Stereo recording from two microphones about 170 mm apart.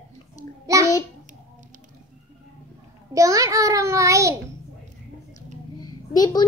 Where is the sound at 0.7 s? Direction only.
20° right (ahead or behind).